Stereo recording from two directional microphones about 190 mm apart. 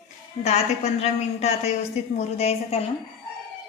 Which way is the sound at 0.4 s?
35° left (ahead or behind).